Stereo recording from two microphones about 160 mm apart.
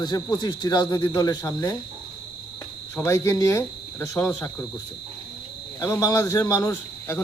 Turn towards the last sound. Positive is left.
turn(degrees=15)  # may be behind; listen again after turning